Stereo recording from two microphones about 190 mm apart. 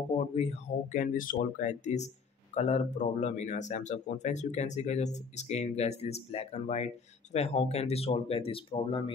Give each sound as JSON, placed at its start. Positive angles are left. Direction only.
{"t": 0.3, "sound": "speech", "side_deg": 35}